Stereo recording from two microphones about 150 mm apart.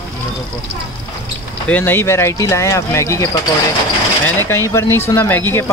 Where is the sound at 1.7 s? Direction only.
15° left (ahead or behind).